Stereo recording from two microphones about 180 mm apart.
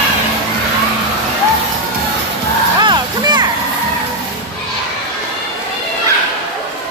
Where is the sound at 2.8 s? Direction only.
25° right (ahead or behind).